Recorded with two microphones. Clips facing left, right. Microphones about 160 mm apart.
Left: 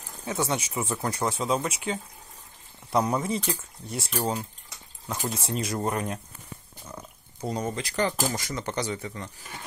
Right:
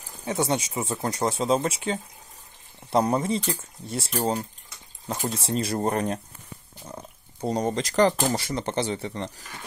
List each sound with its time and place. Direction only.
0.2 s speech: 25° right (ahead or behind)
5.0 s speech: 30° right (ahead or behind)